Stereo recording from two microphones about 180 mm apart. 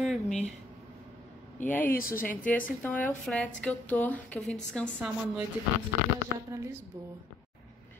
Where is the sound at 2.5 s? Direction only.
10° left (ahead or behind).